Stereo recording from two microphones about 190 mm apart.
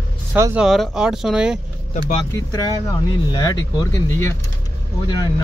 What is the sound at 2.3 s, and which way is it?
Speech, 20° left (ahead or behind).